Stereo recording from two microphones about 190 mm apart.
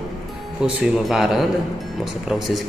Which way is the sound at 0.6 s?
5° right (ahead or behind).